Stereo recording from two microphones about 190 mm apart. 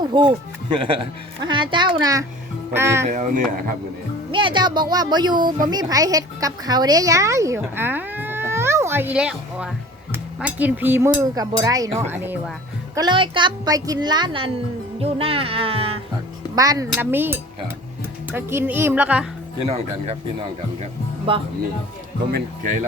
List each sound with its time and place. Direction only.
0.0 s speech: 25° right (ahead or behind)
3.1 s speech: 45° right (ahead or behind)
4.3 s speech: 25° right (ahead or behind); by 12.4 s 10° right (ahead or behind)
13.0 s speech: 25° right (ahead or behind)
16.6 s speech: 20° right (ahead or behind)
19.6 s speech: 35° right (ahead or behind)
21.3 s speech: 30° right (ahead or behind)